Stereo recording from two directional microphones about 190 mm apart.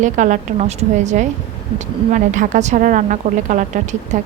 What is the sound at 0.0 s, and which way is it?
A woman's voice, 40° right (ahead or behind).